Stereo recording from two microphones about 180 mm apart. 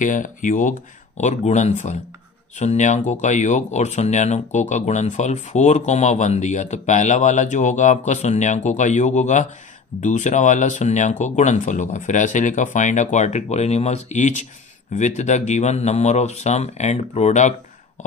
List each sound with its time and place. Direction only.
0.0 s speech: 45° left (ahead or behind)